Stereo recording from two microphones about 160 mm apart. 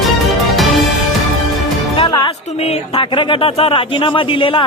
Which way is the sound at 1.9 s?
30° left (ahead or behind).